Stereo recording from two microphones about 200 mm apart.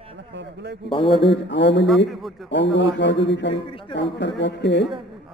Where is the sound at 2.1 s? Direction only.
Centre (ahead or behind).